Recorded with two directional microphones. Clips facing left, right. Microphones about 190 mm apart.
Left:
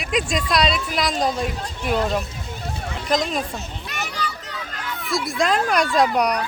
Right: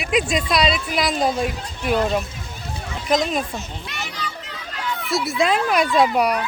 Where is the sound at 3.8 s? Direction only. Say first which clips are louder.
Left 2 dB; 40° left (ahead or behind).